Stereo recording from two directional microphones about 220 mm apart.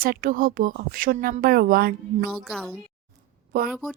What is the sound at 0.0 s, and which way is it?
Speech, 40° right (ahead or behind).